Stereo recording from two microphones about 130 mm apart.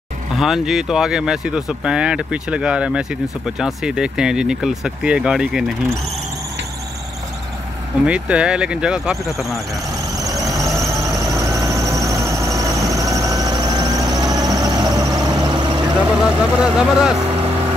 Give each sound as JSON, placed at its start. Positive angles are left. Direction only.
{"t": 0.4, "sound": "speech", "side_deg": 0}
{"t": 8.1, "sound": "speech", "side_deg": -10}
{"t": 10.1, "sound": "squeal", "side_deg": -30}
{"t": 11.1, "sound": "vehicle", "side_deg": -25}
{"t": 16.2, "sound": "speech", "side_deg": -10}